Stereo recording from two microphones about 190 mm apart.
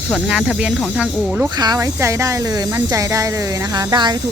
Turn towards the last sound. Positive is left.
turn(degrees=-20)  # may be behind; listen again after turning